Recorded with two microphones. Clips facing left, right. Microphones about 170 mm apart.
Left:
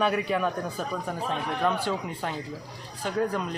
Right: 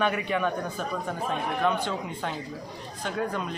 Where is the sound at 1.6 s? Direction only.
5° left (ahead or behind).